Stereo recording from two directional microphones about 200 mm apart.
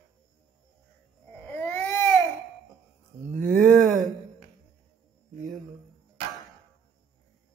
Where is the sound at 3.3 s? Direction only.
45° right (ahead or behind).